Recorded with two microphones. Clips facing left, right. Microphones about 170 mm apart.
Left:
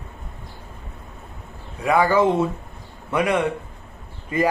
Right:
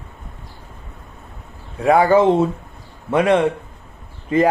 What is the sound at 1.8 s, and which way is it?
Speech, 25° right (ahead or behind).